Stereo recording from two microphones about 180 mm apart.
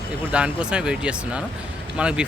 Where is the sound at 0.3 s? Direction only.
5° right (ahead or behind).